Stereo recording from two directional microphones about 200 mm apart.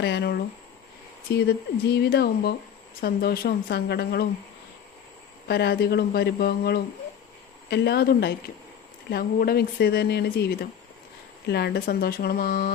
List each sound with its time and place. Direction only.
0.0 s speech: 60° left (ahead or behind)
5.5 s speech: 55° left (ahead or behind)